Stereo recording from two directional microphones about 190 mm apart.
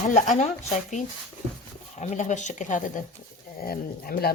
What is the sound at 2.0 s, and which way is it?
Speech, 40° left (ahead or behind).